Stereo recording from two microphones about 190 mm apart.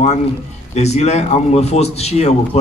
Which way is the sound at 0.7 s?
35° left (ahead or behind).